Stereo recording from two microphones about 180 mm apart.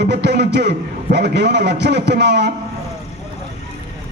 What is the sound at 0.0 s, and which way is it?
A man's voice, 70° right (ahead or behind).